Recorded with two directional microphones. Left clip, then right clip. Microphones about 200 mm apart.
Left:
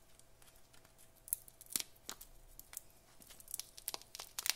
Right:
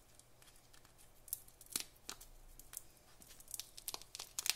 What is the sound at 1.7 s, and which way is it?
Scissors, 15° left (ahead or behind).